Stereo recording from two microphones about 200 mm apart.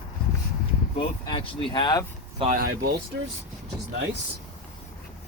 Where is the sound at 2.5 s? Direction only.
45° right (ahead or behind).